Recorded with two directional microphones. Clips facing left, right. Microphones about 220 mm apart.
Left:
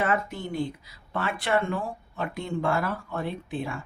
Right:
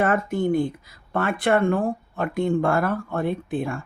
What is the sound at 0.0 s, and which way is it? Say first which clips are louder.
Speech: right 6 dB; 50° right (ahead or behind).